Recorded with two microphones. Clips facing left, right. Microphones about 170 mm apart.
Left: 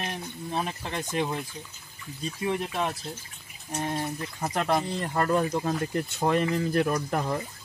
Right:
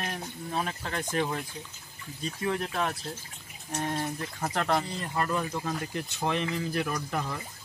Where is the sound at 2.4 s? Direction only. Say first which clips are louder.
Left 1 dB; 15° left (ahead or behind).